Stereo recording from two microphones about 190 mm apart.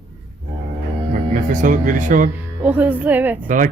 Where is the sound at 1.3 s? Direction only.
45° right (ahead or behind).